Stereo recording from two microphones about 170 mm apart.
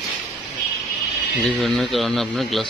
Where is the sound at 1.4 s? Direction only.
Centre (ahead or behind).